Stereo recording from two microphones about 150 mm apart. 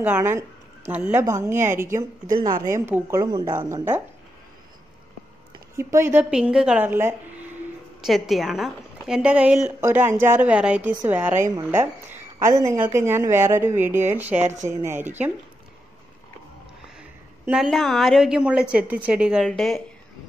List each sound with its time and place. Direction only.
0.0 s speech: 15° right (ahead or behind)
5.8 s speech: 20° right (ahead or behind)
6.3 s speech: 5° right (ahead or behind)
8.0 s a woman's voice: centre (ahead or behind)
17.5 s a woman's voice: centre (ahead or behind)